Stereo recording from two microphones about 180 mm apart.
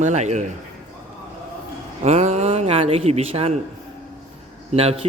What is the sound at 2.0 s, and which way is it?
Speech, 40° right (ahead or behind).